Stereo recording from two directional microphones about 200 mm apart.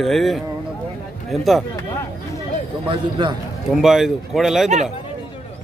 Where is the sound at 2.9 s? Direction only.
25° right (ahead or behind).